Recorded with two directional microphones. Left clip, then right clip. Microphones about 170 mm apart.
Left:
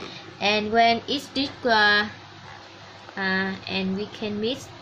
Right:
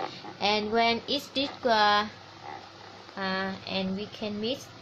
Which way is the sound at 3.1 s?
25° right (ahead or behind).